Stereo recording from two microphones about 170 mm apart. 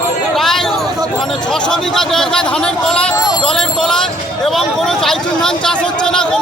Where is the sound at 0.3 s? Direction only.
Centre (ahead or behind).